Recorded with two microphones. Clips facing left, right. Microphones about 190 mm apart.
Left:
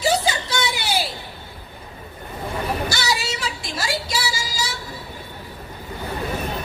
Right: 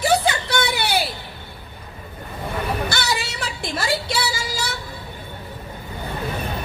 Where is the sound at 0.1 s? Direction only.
60° right (ahead or behind).